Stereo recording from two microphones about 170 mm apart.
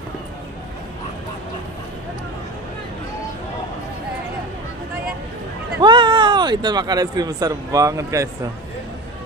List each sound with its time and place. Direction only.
5.8 s speech: 25° right (ahead or behind)